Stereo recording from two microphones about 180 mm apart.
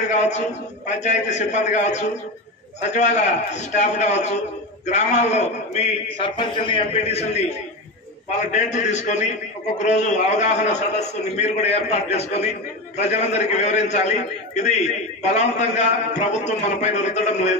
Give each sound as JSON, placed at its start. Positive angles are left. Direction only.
{"t": 0.1, "sound": "a man's voice", "side_deg": 40}